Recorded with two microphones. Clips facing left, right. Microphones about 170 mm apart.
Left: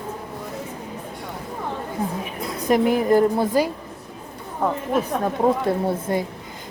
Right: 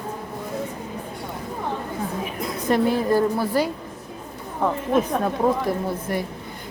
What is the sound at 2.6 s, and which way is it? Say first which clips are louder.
A woman's voice: left 2 dB; 15° left (ahead or behind).